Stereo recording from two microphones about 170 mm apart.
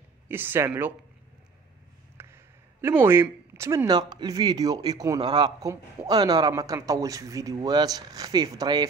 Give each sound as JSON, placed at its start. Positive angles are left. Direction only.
{"t": 0.3, "sound": "speech", "side_deg": -10}
{"t": 2.1, "sound": "speech", "side_deg": -15}